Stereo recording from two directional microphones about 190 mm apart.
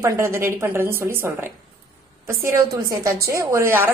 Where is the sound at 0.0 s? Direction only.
15° right (ahead or behind).